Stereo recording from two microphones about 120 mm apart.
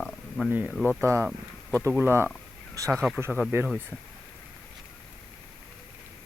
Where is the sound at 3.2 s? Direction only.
15° right (ahead or behind).